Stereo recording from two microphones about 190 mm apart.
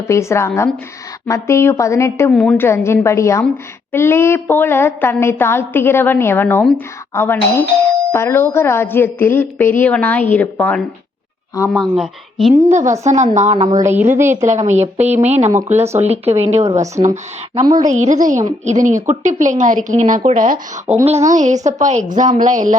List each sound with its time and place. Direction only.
0.1 s a woman's voice: 15° left (ahead or behind)
2.3 s a woman's voice: 5° left (ahead or behind)
12.6 s speech: 40° right (ahead or behind)
13.8 s a woman's voice: 10° right (ahead or behind)
15.3 s speech: 35° right (ahead or behind)
17.5 s a woman's voice: 25° right (ahead or behind)
17.8 s speech: 40° right (ahead or behind)
20.8 s a woman's voice: 10° right (ahead or behind)
21.1 s speech: 40° right (ahead or behind)